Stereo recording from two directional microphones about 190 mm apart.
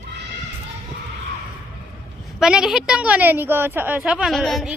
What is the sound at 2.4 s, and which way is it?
A woman's voice, 5° right (ahead or behind).